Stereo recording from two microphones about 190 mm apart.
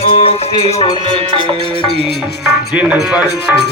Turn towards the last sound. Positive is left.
turn(degrees=-5)  # may be behind; listen again after turning